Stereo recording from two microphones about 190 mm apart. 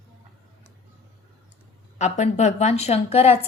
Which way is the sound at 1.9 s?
40° left (ahead or behind).